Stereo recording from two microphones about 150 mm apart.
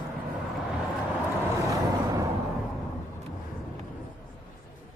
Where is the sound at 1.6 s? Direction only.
20° right (ahead or behind).